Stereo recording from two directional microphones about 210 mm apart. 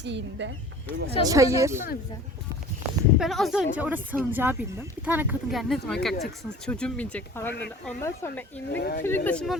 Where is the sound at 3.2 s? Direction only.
Centre (ahead or behind).